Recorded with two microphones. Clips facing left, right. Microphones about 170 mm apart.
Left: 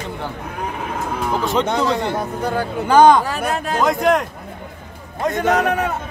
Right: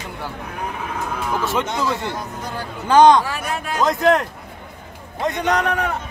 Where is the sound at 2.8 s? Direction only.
10° left (ahead or behind).